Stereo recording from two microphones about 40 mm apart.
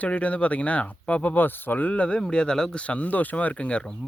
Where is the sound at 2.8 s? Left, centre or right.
Left.